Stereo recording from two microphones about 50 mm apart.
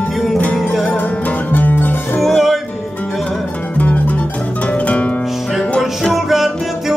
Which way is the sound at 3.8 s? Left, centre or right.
Left.